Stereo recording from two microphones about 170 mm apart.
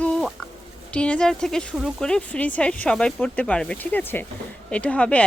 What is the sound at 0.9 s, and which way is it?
Speech, 5° left (ahead or behind).